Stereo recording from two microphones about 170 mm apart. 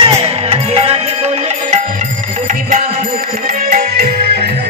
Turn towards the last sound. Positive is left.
turn(degrees=-60)  # may be behind; listen again after turning